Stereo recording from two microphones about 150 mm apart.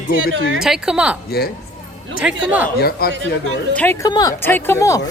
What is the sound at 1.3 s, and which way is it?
Speech, 90° left.